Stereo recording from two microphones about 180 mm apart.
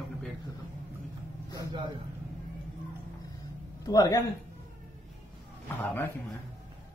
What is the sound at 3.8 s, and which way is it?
Speech, 20° left (ahead or behind).